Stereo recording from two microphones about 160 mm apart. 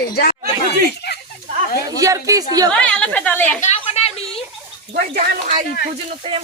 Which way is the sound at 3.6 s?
45° left (ahead or behind).